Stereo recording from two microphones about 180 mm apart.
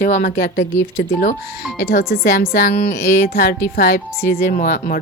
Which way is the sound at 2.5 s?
60° left (ahead or behind).